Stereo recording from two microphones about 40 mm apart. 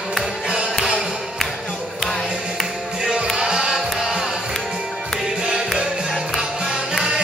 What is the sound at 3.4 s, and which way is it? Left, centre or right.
Music, centre.